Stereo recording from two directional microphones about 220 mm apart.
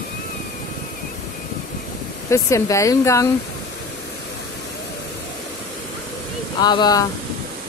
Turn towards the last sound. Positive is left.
turn(degrees=20)  # may be behind; listen again after turning